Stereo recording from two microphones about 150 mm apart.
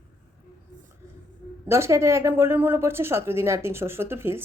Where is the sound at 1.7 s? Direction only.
20° right (ahead or behind).